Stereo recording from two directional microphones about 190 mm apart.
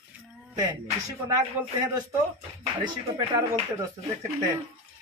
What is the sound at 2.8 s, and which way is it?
Speech, 25° right (ahead or behind).